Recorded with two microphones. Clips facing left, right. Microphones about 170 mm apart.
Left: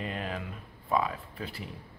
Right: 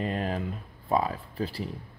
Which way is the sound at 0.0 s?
40° right (ahead or behind).